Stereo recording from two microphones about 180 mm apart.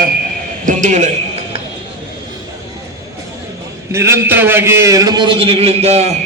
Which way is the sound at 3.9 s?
15° right (ahead or behind).